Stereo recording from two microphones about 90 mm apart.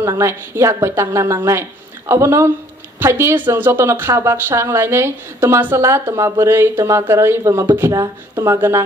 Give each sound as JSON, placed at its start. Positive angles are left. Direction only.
{"t": 0.2, "sound": "a woman's voice", "side_deg": -30}